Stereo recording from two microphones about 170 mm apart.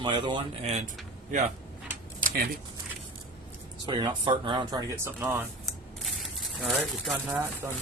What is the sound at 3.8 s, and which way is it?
Speech, 25° right (ahead or behind).